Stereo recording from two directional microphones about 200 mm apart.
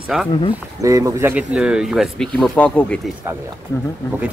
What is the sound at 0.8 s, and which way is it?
Speech, 15° right (ahead or behind).